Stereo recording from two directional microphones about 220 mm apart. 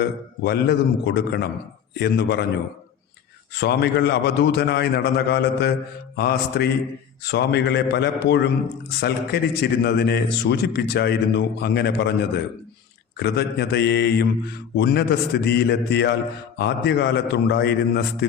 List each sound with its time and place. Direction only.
0.0 s a man's voice: 50° left (ahead or behind)
3.6 s a man's voice: 50° left (ahead or behind)